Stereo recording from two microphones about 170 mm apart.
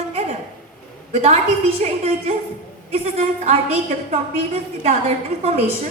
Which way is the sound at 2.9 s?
40° right (ahead or behind).